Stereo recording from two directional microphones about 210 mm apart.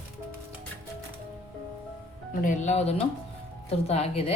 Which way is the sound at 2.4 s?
35° left (ahead or behind).